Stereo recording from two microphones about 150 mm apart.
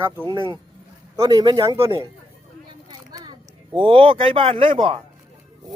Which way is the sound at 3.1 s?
25° right (ahead or behind).